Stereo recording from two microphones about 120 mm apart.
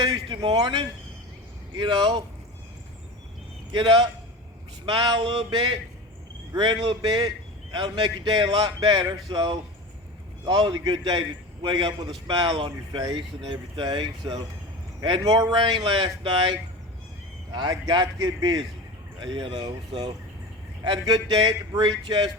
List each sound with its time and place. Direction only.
0.3 s a man's voice: 35° right (ahead or behind)
3.7 s a man's voice: 40° right (ahead or behind)